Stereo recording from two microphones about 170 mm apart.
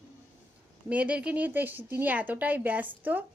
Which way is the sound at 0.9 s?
5° right (ahead or behind).